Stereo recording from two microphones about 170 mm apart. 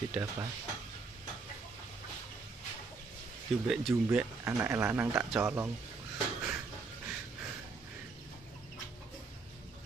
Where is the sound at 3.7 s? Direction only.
Centre (ahead or behind).